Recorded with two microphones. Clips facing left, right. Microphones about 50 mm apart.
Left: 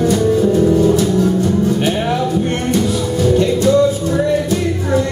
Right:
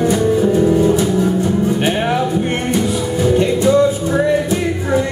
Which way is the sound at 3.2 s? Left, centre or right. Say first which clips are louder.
Even; centre.